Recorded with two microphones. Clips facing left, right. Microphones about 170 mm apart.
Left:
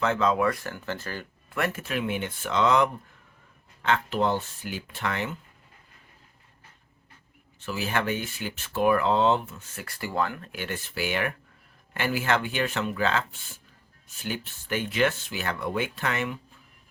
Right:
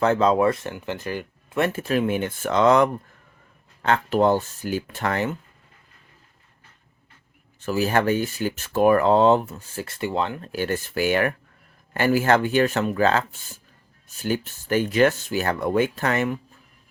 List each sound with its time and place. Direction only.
0.0 s speech: 35° right (ahead or behind)
7.6 s speech: 40° right (ahead or behind)